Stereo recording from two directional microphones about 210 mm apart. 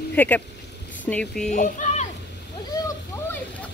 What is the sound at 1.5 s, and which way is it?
Speech, 35° left (ahead or behind).